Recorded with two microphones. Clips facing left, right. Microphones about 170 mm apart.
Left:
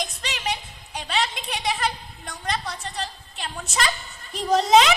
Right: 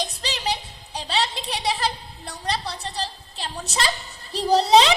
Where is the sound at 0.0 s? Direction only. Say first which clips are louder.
Right 2 dB; 35° right (ahead or behind).